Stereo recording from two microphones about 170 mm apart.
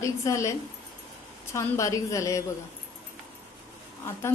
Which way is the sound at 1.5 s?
15° left (ahead or behind).